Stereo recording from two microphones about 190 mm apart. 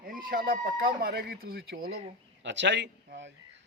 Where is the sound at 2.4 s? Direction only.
70° right (ahead or behind).